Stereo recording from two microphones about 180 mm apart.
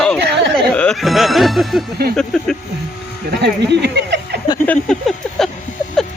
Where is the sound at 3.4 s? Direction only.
65° right (ahead or behind).